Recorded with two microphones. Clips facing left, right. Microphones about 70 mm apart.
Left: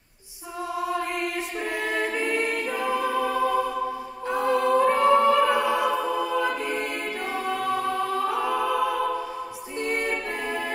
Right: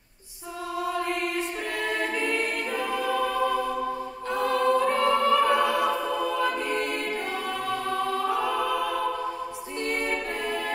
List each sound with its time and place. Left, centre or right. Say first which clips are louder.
2.2 s music: left 2 dB; centre
4.3 s choir: left 1 dB; centre
5.2 s a capella: left 2 dB; centre
5.5 s choir: even; centre
9.8 s choir: left 2 dB; centre